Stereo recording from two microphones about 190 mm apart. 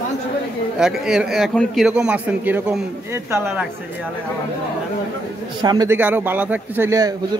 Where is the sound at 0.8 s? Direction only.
5° right (ahead or behind).